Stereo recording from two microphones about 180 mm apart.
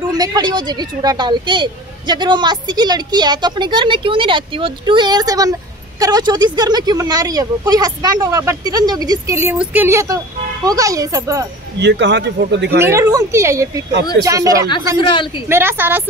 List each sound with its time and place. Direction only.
0.2 s speech: 20° right (ahead or behind)
11.8 s speech: 75° right (ahead or behind)
12.7 s speech: 15° right (ahead or behind)
15.0 s speech: 25° left (ahead or behind)
15.4 s speech: 15° right (ahead or behind)